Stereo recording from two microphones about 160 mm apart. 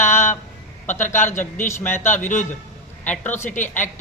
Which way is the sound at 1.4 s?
15° left (ahead or behind).